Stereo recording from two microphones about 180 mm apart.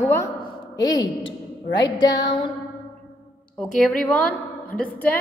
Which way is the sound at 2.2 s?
25° left (ahead or behind).